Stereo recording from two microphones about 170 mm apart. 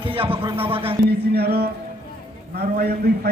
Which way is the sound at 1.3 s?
70° right (ahead or behind).